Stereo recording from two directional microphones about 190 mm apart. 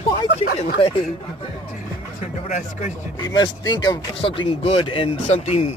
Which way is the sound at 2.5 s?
40° left (ahead or behind).